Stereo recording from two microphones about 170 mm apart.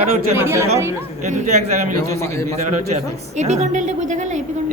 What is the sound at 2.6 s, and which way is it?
Speech, 45° right (ahead or behind).